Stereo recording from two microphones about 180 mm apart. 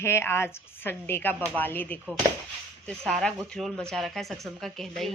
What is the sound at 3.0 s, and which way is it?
Speech, 5° left (ahead or behind).